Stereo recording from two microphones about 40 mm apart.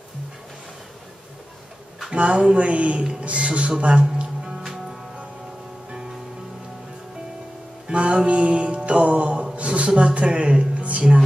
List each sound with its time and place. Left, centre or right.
2.1 s speech: right
7.9 s music: right
9.6 s a sound: right